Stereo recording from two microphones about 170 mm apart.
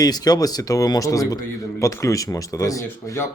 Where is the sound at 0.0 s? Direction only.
20° left (ahead or behind).